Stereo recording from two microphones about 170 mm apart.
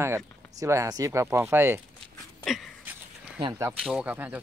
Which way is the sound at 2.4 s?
Centre (ahead or behind).